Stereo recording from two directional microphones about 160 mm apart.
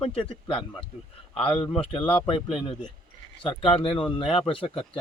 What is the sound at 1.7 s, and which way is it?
Speech, 35° left (ahead or behind).